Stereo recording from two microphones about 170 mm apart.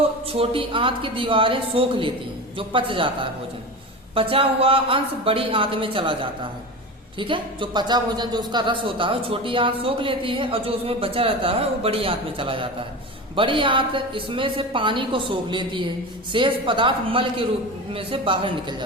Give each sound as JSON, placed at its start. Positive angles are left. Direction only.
{"t": 0.3, "sound": "speech", "side_deg": -35}
{"t": 4.1, "sound": "a woman's voice", "side_deg": -30}